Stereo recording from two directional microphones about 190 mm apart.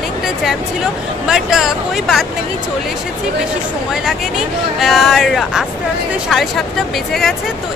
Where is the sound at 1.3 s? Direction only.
Centre (ahead or behind).